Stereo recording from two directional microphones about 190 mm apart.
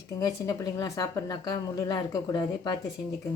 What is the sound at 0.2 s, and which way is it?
A woman's voice, 20° left (ahead or behind).